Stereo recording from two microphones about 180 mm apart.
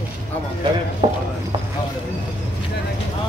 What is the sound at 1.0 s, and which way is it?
Speech, 25° right (ahead or behind).